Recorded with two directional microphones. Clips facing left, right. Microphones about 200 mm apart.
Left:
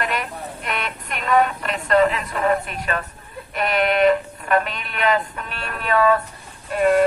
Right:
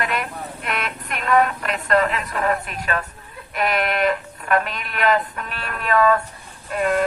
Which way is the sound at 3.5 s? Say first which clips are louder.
Left 2 dB; centre (ahead or behind).